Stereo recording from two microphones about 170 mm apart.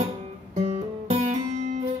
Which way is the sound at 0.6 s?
40° right (ahead or behind).